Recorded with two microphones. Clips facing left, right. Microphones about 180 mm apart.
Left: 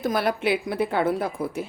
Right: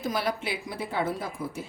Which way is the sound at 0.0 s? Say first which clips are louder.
Left 6 dB; 55° left (ahead or behind).